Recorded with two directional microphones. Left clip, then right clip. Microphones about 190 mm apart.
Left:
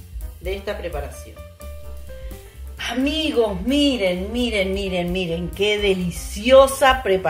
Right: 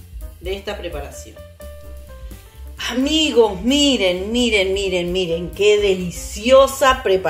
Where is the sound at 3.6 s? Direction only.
40° right (ahead or behind).